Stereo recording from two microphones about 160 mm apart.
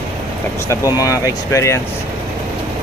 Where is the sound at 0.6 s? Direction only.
20° left (ahead or behind).